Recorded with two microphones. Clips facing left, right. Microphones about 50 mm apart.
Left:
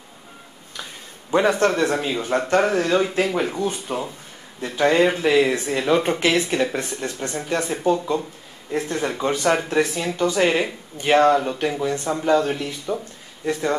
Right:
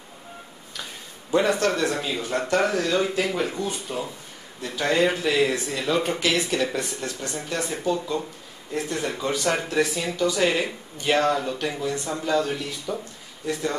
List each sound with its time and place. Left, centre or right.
1.3 s speech: left
3.9 s speech: left